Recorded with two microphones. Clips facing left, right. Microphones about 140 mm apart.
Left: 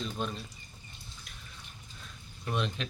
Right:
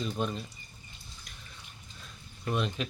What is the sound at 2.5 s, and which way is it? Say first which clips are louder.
Speech: right 2 dB; 5° right (ahead or behind).